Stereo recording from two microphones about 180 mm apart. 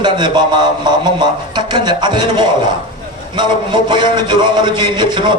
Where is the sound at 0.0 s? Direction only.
25° right (ahead or behind).